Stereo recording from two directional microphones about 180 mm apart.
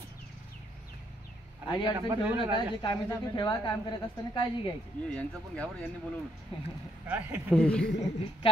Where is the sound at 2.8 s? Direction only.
25° left (ahead or behind).